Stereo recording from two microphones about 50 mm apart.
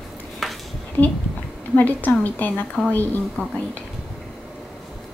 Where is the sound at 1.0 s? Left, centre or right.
Left.